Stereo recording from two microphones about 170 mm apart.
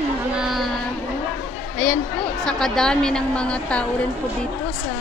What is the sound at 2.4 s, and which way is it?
A woman's voice, 5° left (ahead or behind).